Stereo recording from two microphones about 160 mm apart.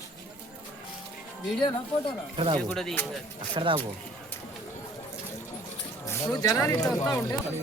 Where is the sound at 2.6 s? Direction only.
5° left (ahead or behind).